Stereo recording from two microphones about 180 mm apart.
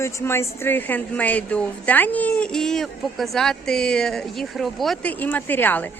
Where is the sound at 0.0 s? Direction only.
15° left (ahead or behind).